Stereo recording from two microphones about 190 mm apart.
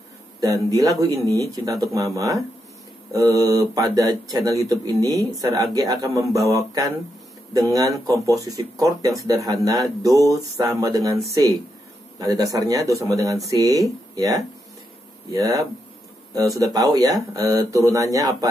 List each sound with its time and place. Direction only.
0.4 s speech: 15° right (ahead or behind)